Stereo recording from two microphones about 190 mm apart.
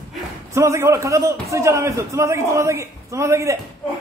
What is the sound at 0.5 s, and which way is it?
A man's voice, 15° right (ahead or behind).